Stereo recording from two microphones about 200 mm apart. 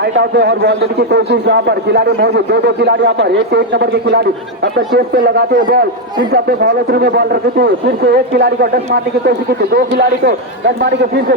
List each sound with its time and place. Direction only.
0.2 s a man's voice: 55° right (ahead or behind)